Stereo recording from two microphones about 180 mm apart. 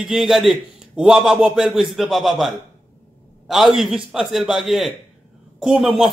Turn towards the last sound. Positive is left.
turn(degrees=0)  # may be behind; listen again after turning